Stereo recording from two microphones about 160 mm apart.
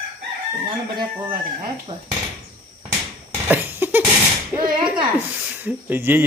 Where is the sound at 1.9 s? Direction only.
30° right (ahead or behind).